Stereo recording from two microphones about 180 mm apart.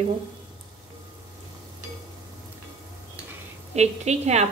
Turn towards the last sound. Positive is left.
turn(degrees=-40)  # may be behind; listen again after turning